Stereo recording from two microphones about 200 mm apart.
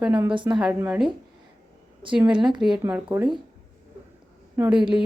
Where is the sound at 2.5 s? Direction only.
Centre (ahead or behind).